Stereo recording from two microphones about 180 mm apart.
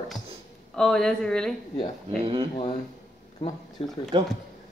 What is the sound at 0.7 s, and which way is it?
Speech, 5° left (ahead or behind).